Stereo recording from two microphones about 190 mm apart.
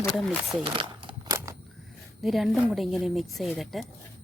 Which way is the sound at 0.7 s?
25° right (ahead or behind).